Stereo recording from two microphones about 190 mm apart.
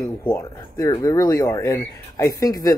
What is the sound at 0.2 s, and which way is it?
Speech, 15° left (ahead or behind).